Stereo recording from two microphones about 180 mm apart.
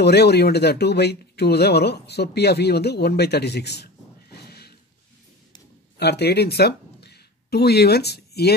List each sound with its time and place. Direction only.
0.0 s speech: 65° left (ahead or behind)
5.9 s speech: 65° left (ahead or behind)